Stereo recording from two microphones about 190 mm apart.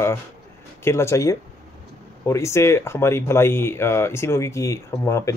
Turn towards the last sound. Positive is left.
turn(degrees=15)  # may be behind; listen again after turning